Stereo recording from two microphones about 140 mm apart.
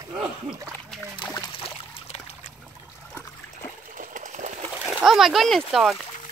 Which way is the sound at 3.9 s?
65° right (ahead or behind).